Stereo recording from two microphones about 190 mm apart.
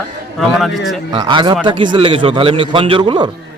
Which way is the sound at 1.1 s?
25° right (ahead or behind).